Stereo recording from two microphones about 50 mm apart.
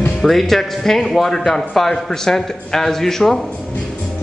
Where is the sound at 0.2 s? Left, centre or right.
Centre.